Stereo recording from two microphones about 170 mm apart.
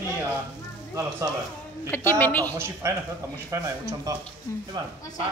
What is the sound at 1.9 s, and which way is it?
Speech, 10° left (ahead or behind).